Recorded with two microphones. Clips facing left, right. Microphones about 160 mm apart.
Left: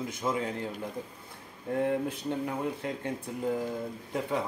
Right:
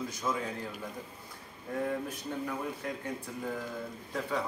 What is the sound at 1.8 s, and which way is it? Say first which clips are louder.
Speech: left 5 dB; 25° left (ahead or behind).